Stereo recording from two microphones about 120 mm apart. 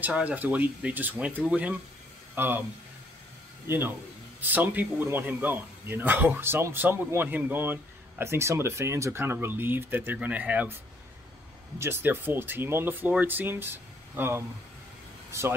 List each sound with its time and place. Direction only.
0.0 s speech: 10° right (ahead or behind)
3.6 s speech: 20° right (ahead or behind)
11.8 s speech: 20° right (ahead or behind)